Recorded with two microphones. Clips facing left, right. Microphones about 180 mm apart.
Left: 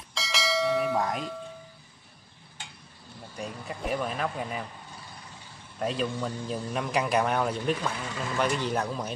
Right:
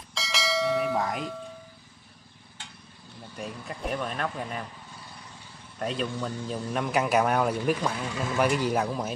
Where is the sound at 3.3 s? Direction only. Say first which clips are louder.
Even; centre (ahead or behind).